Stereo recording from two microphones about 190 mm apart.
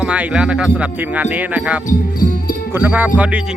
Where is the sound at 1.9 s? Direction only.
50° left (ahead or behind).